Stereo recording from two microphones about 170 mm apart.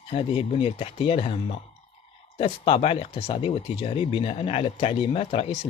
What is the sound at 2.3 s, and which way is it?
Speech, 35° left (ahead or behind).